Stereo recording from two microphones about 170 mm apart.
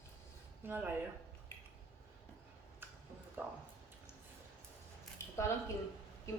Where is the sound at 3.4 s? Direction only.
10° right (ahead or behind).